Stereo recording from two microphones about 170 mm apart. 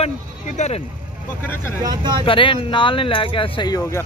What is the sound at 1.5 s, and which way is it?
Speech, 15° left (ahead or behind).